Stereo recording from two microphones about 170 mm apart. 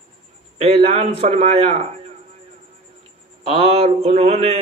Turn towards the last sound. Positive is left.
turn(degrees=-35)  # may be behind; listen again after turning